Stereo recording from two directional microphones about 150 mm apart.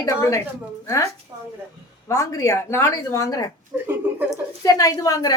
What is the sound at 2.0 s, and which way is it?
Speech, 20° left (ahead or behind).